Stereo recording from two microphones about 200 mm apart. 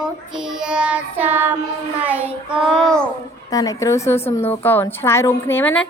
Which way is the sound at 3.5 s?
15° left (ahead or behind).